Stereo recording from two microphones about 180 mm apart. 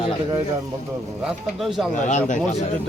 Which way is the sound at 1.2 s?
Centre (ahead or behind).